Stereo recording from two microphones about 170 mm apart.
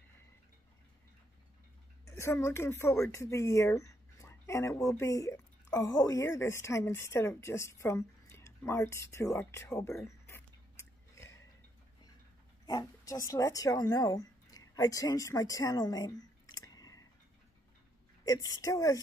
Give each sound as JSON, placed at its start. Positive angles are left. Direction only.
{"t": 2.0, "sound": "a woman's voice", "side_deg": 15}
{"t": 12.6, "sound": "speech", "side_deg": 20}
{"t": 18.2, "sound": "a woman's voice", "side_deg": 20}